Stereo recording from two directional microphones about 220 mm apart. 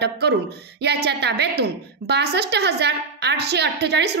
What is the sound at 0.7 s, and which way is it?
A woman's voice, 50° right (ahead or behind).